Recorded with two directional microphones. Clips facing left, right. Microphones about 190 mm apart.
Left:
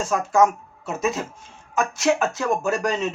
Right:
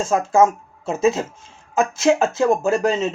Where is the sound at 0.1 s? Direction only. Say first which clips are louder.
Right 3 dB; 25° right (ahead or behind).